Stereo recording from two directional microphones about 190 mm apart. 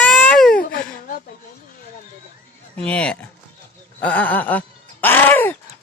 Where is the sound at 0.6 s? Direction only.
50° left (ahead or behind).